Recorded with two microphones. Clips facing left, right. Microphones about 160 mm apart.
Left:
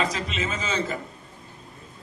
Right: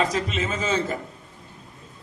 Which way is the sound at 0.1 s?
50° right (ahead or behind).